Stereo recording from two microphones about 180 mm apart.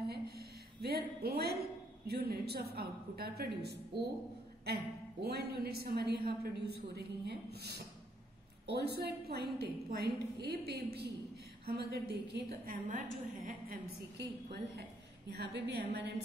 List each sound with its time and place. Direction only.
0.1 s a woman's voice: 60° right (ahead or behind)
15.3 s a woman's voice: 70° right (ahead or behind)